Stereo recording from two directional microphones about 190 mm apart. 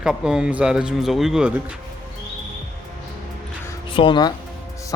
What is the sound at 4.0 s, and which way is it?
Speech, 25° left (ahead or behind).